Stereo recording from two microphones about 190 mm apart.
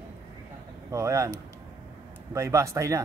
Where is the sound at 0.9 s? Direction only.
15° right (ahead or behind).